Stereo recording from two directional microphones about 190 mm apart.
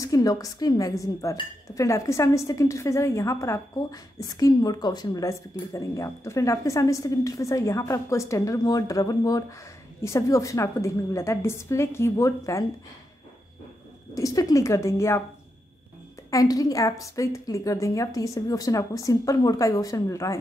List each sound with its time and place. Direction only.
0.0 s a woman's voice: 20° left (ahead or behind)
14.1 s a woman's voice: 15° left (ahead or behind)
16.3 s a woman's voice: 20° left (ahead or behind)